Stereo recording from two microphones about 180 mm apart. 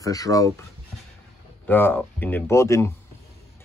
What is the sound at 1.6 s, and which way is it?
Speech, 10° left (ahead or behind).